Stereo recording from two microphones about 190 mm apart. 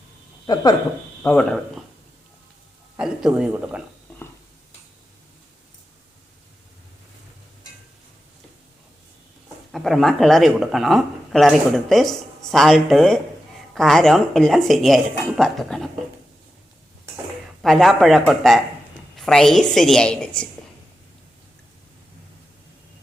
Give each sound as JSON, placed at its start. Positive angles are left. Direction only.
{"t": 0.4, "sound": "speech", "side_deg": 20}
{"t": 1.2, "sound": "speech", "side_deg": 5}
{"t": 3.0, "sound": "speech", "side_deg": -5}
{"t": 9.7, "sound": "speech", "side_deg": 0}
{"t": 17.6, "sound": "speech", "side_deg": 0}